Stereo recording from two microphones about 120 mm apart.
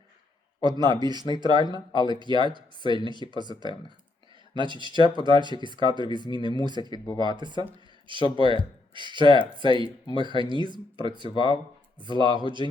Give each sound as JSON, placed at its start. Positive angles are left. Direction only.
{"t": 0.6, "sound": "speech", "side_deg": -35}
{"t": 2.3, "sound": "speech", "side_deg": 40}
{"t": 3.2, "sound": "speech", "side_deg": -40}
{"t": 6.1, "sound": "speech", "side_deg": 40}
{"t": 6.6, "sound": "speech", "side_deg": -40}
{"t": 9.6, "sound": "speech", "side_deg": 40}
{"t": 10.2, "sound": "speech", "side_deg": -40}
{"t": 11.3, "sound": "speech", "side_deg": 40}
{"t": 11.9, "sound": "speech", "side_deg": -40}